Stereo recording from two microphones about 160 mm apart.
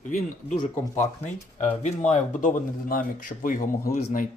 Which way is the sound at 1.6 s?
45° left (ahead or behind).